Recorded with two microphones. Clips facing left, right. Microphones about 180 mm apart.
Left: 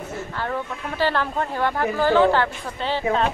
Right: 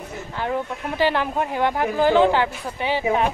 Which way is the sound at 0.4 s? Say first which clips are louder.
Right 4 dB; 15° right (ahead or behind).